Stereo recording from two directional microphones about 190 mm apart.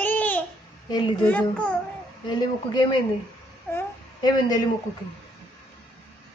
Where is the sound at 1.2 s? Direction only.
5° left (ahead or behind).